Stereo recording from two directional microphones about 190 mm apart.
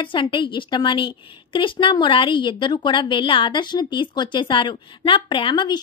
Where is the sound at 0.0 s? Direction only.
25° left (ahead or behind).